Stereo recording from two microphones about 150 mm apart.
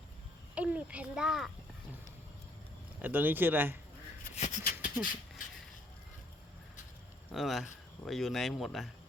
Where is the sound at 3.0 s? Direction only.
10° right (ahead or behind).